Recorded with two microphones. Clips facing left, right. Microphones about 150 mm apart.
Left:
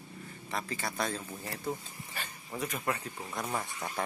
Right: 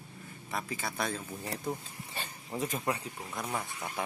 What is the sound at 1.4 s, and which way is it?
Speech, 25° right (ahead or behind).